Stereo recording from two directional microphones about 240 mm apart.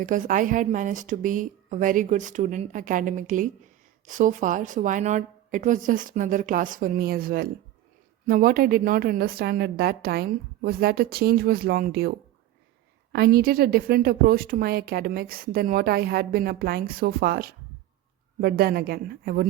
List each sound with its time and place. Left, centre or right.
0.0 s a woman's voice: right
13.1 s a woman's voice: right